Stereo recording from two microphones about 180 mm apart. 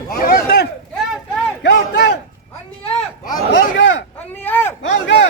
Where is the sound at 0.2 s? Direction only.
50° left (ahead or behind).